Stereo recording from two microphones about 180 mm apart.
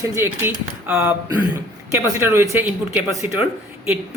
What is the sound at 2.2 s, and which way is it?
Speech, 15° right (ahead or behind).